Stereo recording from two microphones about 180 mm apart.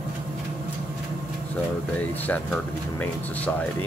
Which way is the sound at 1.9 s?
10° left (ahead or behind).